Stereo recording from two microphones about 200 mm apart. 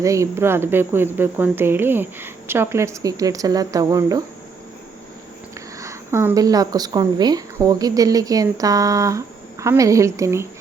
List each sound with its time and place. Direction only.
0.0 s a woman's voice: 15° right (ahead or behind)
5.8 s a woman's voice: 15° right (ahead or behind)